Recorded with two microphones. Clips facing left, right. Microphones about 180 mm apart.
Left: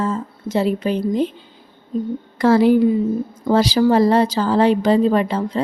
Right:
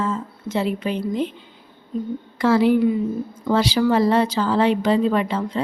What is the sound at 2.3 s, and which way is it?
A woman's voice, 40° left (ahead or behind).